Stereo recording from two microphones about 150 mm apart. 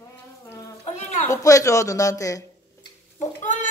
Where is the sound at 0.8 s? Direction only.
50° left (ahead or behind).